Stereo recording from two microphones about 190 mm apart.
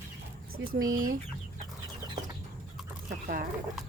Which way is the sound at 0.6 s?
90° right.